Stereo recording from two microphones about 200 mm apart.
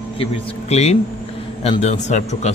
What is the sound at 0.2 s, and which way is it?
A man's voice, 30° left (ahead or behind).